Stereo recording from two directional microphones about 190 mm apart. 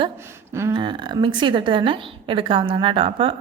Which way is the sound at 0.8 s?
25° right (ahead or behind).